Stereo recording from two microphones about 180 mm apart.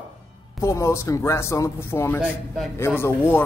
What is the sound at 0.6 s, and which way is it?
A man's voice, 15° left (ahead or behind).